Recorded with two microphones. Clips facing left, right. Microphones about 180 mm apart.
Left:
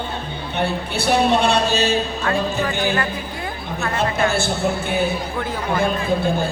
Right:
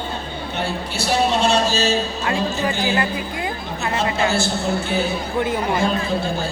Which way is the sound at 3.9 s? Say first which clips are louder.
Even; 55° left (ahead or behind).